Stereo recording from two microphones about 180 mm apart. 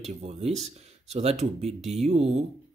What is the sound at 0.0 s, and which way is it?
Speech, 35° right (ahead or behind).